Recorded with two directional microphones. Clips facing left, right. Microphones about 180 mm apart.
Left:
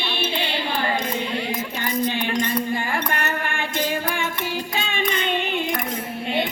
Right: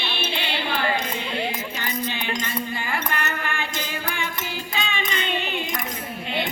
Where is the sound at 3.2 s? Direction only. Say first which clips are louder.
Left 2 dB; 50° left (ahead or behind).